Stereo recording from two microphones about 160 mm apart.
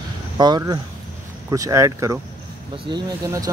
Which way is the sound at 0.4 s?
25° right (ahead or behind).